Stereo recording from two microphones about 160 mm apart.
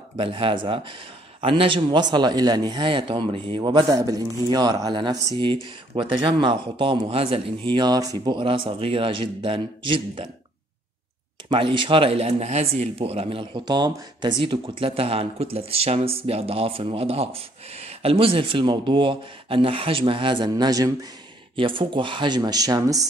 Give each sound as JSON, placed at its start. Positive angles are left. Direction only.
{"t": 0.2, "sound": "a man's voice", "side_deg": -35}
{"t": 11.4, "sound": "a man's voice", "side_deg": -30}